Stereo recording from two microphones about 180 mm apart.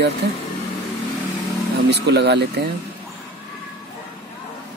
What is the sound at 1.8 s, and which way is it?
Speech, 70° right (ahead or behind).